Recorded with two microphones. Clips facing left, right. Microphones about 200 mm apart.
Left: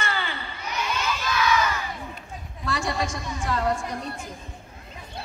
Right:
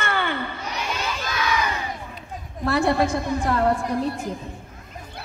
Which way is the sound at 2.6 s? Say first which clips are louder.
Right 8 dB; 60° right (ahead or behind).